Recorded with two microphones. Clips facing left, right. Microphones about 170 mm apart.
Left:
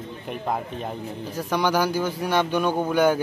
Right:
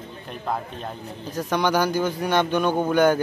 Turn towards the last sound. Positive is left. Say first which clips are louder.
# right 1 dB
turn(degrees=5)  # may be behind; listen again after turning